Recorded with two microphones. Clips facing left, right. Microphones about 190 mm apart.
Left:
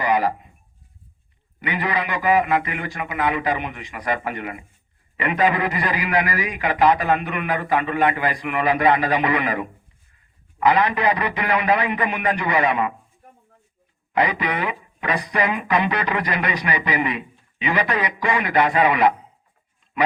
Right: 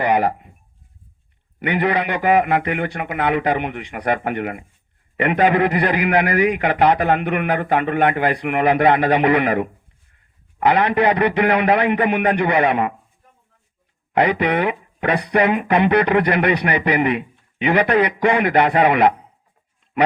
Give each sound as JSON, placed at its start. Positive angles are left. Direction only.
{"t": 0.0, "sound": "a sound", "side_deg": -60}
{"t": 1.5, "sound": "speech", "side_deg": -60}
{"t": 14.1, "sound": "speech", "side_deg": -60}